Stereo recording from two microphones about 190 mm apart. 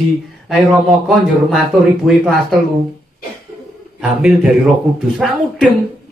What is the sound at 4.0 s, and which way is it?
Speech, 5° right (ahead or behind).